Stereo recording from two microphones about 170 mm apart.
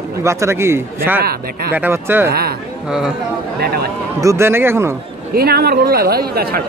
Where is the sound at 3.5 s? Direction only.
65° right (ahead or behind).